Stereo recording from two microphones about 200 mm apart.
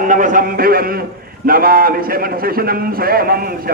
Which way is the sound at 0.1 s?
40° right (ahead or behind).